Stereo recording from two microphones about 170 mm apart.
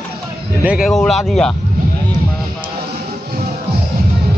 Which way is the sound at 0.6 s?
5° right (ahead or behind).